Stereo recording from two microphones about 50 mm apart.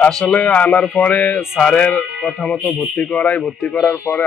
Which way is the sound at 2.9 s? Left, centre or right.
Left.